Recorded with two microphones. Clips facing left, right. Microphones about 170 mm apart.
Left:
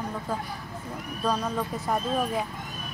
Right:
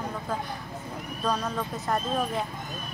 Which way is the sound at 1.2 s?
10° left (ahead or behind).